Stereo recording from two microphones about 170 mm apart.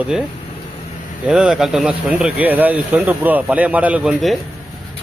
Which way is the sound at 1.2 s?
5° right (ahead or behind).